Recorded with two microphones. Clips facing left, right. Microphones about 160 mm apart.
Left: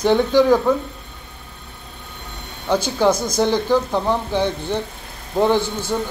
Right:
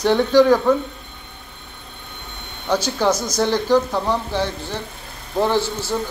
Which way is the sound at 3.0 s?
15° left (ahead or behind).